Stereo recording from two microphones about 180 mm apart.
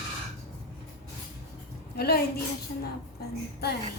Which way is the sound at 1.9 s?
60° left (ahead or behind).